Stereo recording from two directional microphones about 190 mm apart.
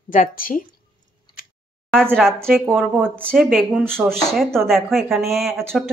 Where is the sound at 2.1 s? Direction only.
Centre (ahead or behind).